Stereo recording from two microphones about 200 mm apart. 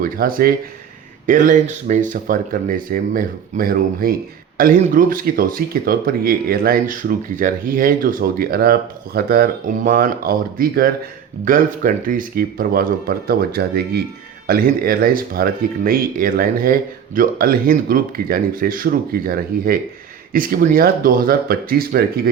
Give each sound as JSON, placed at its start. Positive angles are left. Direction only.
{"t": 0.0, "sound": "speech", "side_deg": -45}